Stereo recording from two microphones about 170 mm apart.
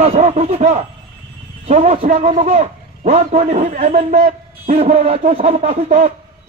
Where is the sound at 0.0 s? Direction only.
40° right (ahead or behind).